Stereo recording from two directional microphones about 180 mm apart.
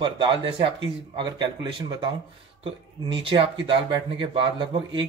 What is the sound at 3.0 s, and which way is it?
Speech, 30° right (ahead or behind).